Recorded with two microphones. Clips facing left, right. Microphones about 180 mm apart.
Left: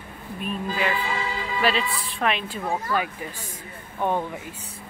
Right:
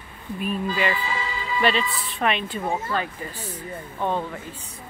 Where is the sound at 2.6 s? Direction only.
20° right (ahead or behind).